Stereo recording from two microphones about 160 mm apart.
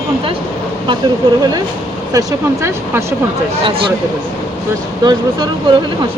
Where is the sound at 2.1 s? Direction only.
15° right (ahead or behind).